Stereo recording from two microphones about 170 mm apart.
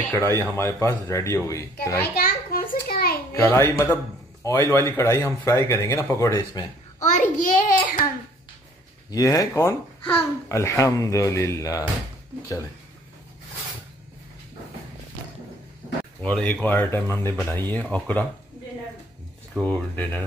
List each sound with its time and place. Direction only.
0.3 s speech: 15° left (ahead or behind)
2.1 s a sound: 55° left (ahead or behind)
3.3 s speech: 15° left (ahead or behind)
7.0 s a sound: 45° left (ahead or behind)
9.1 s speech: 20° left (ahead or behind)
16.2 s speech: 5° left (ahead or behind)
19.6 s speech: 10° left (ahead or behind)